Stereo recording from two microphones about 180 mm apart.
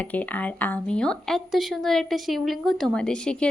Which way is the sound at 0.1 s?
10° left (ahead or behind).